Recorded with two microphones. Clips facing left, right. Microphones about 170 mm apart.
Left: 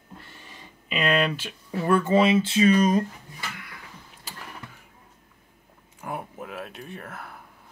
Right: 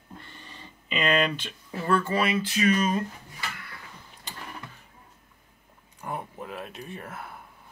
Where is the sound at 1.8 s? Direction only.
20° left (ahead or behind); by 3.0 s 35° left (ahead or behind).